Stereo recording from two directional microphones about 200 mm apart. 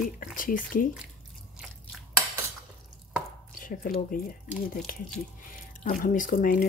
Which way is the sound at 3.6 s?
45° left (ahead or behind).